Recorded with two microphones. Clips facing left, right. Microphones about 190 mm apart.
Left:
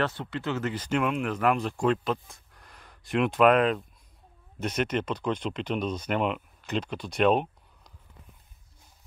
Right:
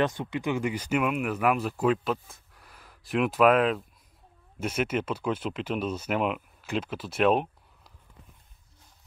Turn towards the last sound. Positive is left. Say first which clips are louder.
# left 1 dB
turn(degrees=-5)  # may be behind; listen again after turning